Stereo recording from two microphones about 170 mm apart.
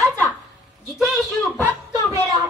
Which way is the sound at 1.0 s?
Centre (ahead or behind).